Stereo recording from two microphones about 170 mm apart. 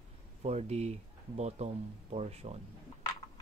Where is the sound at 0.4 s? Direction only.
40° right (ahead or behind).